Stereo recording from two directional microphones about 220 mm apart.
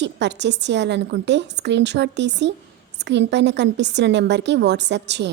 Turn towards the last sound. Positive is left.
turn(degrees=-50)  # may be behind; listen again after turning